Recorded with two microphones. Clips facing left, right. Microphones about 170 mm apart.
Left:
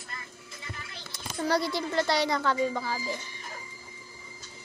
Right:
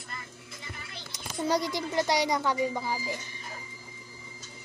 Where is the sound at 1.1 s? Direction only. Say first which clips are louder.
Even; 15° right (ahead or behind).